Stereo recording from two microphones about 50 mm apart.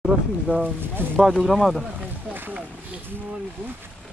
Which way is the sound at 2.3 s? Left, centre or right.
Right.